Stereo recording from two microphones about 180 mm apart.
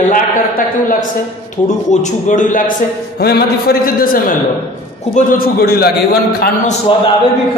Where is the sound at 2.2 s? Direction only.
45° left (ahead or behind).